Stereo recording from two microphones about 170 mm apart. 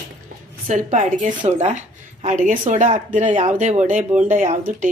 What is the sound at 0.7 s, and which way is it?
Speech, 45° right (ahead or behind).